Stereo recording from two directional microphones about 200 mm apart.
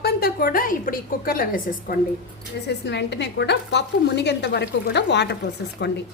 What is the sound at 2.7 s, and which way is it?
Speech, 60° left (ahead or behind).